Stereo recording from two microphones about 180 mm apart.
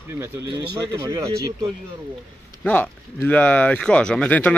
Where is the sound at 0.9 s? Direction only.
20° right (ahead or behind).